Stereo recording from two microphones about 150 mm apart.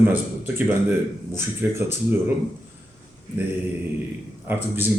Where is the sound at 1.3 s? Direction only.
15° right (ahead or behind).